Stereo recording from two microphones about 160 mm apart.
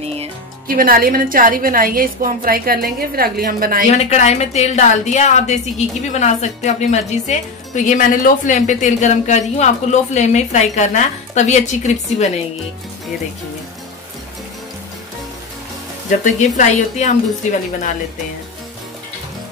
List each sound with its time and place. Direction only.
0.0 s music: 40° right (ahead or behind)
0.7 s a woman's voice: 65° right (ahead or behind)
3.9 s a woman's voice: 45° left (ahead or behind)
16.5 s a woman's voice: 50° left (ahead or behind)